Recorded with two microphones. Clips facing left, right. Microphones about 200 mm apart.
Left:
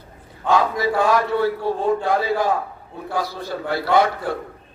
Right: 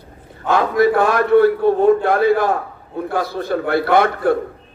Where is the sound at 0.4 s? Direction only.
60° right (ahead or behind).